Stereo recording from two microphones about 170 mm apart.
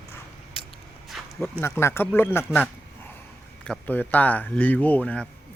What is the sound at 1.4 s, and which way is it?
A man's voice, 10° left (ahead or behind).